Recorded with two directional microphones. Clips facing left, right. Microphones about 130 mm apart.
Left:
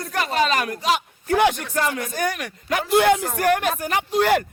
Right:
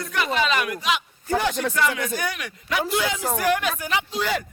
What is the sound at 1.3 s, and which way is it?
Speech, 65° left (ahead or behind).